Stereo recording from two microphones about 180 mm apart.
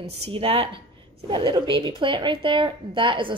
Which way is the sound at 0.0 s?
35° right (ahead or behind).